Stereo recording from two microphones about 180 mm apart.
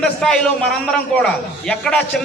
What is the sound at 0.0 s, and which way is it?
Speech, 5° left (ahead or behind).